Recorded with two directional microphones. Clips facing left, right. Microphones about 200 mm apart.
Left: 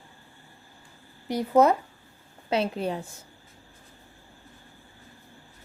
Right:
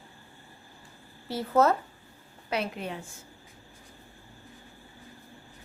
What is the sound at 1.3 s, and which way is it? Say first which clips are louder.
Speech: left 4 dB; 15° left (ahead or behind).